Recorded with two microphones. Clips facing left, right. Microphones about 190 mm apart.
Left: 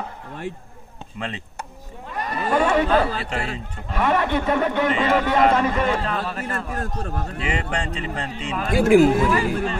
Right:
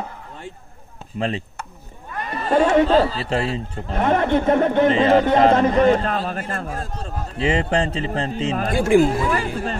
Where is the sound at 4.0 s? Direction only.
45° right (ahead or behind).